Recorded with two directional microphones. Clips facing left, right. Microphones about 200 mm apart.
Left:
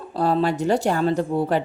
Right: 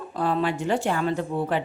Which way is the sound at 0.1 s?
35° left (ahead or behind).